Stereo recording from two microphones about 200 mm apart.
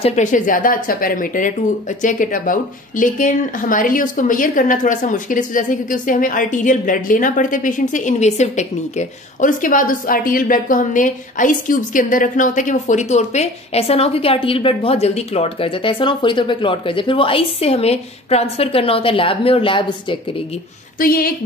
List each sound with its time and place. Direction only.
0.0 s speech: 35° left (ahead or behind)
21.0 s a woman's voice: 45° left (ahead or behind)